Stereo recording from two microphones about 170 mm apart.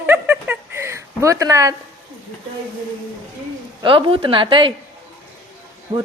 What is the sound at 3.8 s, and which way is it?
Speech, 30° right (ahead or behind).